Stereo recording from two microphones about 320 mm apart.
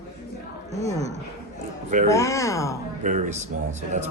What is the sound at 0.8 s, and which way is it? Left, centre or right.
Speech, centre.